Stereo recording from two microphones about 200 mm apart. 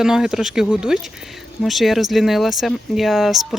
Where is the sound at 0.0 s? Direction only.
5° right (ahead or behind).